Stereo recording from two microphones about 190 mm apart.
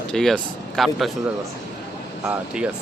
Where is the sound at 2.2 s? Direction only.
5° right (ahead or behind).